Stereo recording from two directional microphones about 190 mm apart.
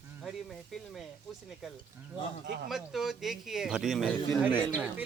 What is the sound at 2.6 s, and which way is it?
Speech, centre (ahead or behind).